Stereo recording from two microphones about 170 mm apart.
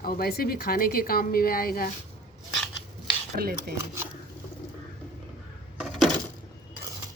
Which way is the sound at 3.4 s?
65° right (ahead or behind).